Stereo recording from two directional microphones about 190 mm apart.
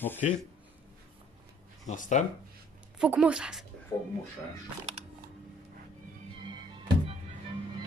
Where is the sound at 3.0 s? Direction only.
5° right (ahead or behind).